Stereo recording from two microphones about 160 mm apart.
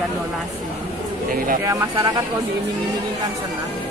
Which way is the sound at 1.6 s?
20° right (ahead or behind).